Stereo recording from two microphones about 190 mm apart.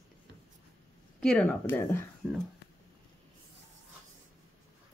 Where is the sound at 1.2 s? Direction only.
5° left (ahead or behind).